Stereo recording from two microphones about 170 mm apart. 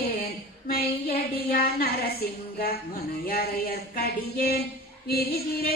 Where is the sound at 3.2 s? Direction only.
60° left (ahead or behind).